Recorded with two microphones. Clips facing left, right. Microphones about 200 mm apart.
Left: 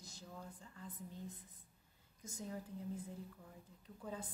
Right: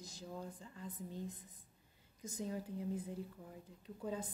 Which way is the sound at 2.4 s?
15° right (ahead or behind).